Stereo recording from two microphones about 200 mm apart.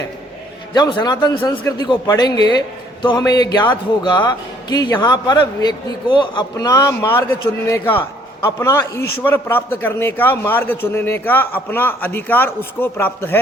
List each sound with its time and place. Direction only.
0.7 s a man's voice: 20° left (ahead or behind)